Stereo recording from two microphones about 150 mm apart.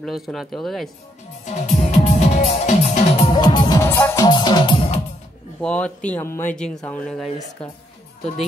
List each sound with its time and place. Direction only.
0.0 s speech: centre (ahead or behind)
1.4 s music: 50° left (ahead or behind)
3.3 s speech: 30° left (ahead or behind)
3.8 s music: 15° left (ahead or behind); by 4.8 s 30° left (ahead or behind)
5.6 s speech: 5° left (ahead or behind)